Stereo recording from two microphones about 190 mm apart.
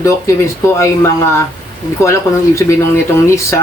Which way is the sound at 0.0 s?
15° left (ahead or behind).